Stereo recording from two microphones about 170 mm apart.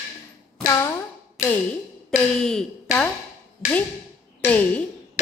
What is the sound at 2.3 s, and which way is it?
Speech, 5° left (ahead or behind).